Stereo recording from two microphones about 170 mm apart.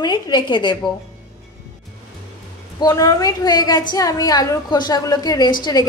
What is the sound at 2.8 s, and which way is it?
A woman's voice, 20° left (ahead or behind).